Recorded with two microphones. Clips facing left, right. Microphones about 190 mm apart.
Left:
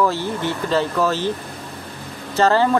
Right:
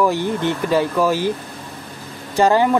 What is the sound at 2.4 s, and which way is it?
Speech, 15° right (ahead or behind).